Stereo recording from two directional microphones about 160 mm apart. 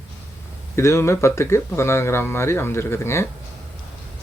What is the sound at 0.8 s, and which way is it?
Speech, 15° left (ahead or behind).